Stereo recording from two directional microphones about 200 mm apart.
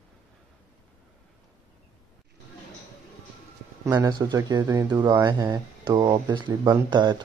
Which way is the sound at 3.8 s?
20° right (ahead or behind).